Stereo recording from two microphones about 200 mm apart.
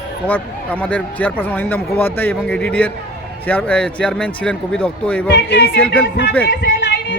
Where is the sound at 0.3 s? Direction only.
10° left (ahead or behind).